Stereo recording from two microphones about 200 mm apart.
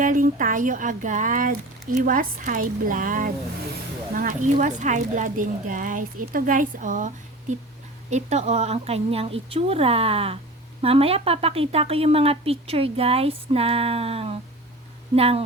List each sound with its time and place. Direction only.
0.0 s speech: 40° right (ahead or behind)
8.1 s a woman's voice: 35° right (ahead or behind)